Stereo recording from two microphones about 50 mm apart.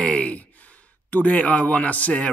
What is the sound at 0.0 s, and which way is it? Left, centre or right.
Sigh, left.